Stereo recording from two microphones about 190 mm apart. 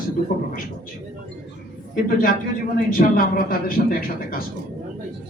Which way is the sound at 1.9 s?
50° left (ahead or behind).